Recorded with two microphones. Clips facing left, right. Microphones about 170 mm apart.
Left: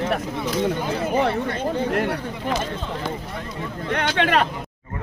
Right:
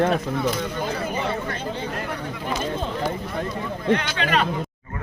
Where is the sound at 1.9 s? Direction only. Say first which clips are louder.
Left 7 dB; 70° left (ahead or behind).